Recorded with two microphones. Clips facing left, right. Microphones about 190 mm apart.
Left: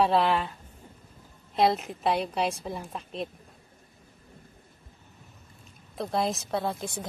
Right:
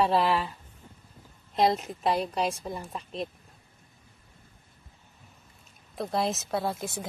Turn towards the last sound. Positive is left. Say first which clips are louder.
# even
turn(degrees=-5)  # may be behind; listen again after turning